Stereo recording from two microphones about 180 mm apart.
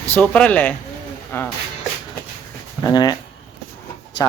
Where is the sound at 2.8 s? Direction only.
20° left (ahead or behind).